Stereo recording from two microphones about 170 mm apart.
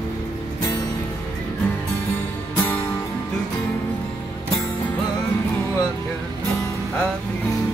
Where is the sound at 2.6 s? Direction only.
10° left (ahead or behind).